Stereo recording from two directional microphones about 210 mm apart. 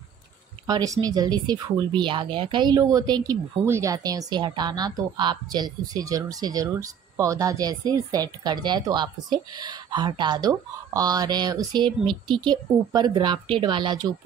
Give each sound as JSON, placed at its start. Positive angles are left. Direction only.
{"t": 0.7, "sound": "a woman's voice", "side_deg": -20}